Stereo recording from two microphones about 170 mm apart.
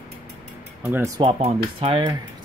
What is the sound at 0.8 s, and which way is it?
Speech, 15° right (ahead or behind).